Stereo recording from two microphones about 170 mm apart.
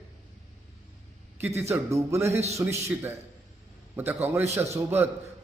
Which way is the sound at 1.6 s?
15° right (ahead or behind).